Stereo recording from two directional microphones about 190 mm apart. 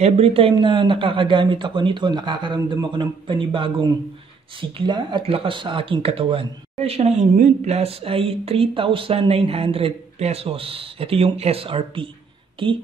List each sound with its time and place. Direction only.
0.0 s speech: 30° right (ahead or behind)